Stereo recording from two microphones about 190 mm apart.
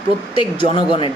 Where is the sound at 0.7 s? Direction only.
25° left (ahead or behind).